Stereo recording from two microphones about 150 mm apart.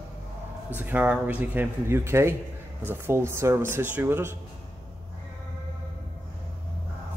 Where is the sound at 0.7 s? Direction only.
10° right (ahead or behind).